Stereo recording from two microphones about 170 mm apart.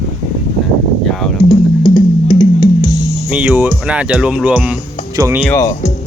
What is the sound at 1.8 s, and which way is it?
Music, 25° left (ahead or behind).